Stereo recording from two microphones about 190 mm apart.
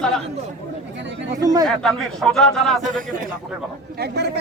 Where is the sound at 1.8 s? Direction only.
Centre (ahead or behind).